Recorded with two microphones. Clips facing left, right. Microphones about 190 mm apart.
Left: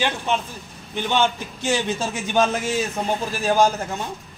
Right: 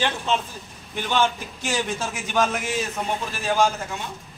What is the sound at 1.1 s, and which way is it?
Speech, 25° left (ahead or behind).